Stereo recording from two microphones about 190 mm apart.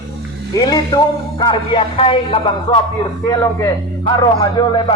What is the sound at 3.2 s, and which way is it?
A man's voice, 15° left (ahead or behind).